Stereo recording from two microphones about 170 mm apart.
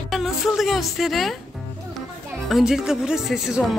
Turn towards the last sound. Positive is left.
turn(degrees=-5)  # may be behind; listen again after turning